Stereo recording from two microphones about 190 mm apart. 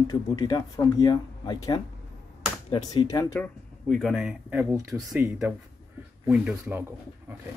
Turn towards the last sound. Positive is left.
turn(degrees=-10)  # may be behind; listen again after turning